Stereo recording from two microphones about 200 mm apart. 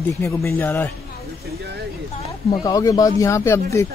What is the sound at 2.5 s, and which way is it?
Speech, 20° left (ahead or behind).